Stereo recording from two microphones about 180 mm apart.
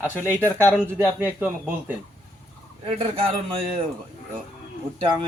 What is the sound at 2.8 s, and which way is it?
Speech, 35° right (ahead or behind).